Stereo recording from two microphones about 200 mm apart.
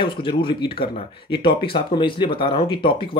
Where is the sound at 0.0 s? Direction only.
25° left (ahead or behind).